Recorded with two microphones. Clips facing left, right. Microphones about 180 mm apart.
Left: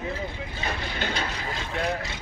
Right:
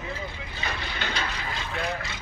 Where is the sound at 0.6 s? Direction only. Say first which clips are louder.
Left 2 dB; 45° left (ahead or behind).